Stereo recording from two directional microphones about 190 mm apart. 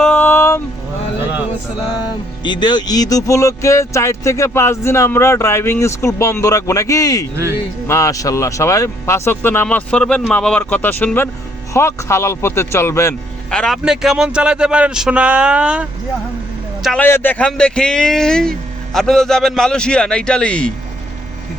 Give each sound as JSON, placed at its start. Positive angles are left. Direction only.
{"t": 0.0, "sound": "vehicle", "side_deg": 10}
{"t": 2.4, "sound": "speech", "side_deg": 25}
{"t": 7.3, "sound": "speech", "side_deg": -15}
{"t": 7.9, "sound": "a man's voice", "side_deg": 15}
{"t": 16.8, "sound": "a man's voice", "side_deg": 5}